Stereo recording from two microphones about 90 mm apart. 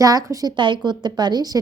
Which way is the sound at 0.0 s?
40° right (ahead or behind).